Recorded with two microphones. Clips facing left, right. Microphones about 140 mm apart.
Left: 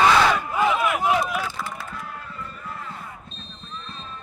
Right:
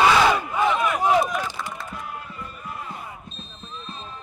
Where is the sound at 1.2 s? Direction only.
5° left (ahead or behind).